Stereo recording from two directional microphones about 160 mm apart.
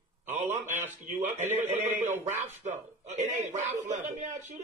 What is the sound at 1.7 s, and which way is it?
Speech, 10° right (ahead or behind).